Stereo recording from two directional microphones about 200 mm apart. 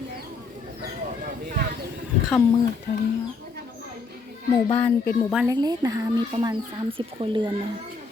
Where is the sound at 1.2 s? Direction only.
45° right (ahead or behind).